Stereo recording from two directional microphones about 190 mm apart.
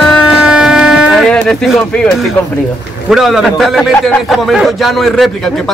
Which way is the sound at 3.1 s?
Centre (ahead or behind).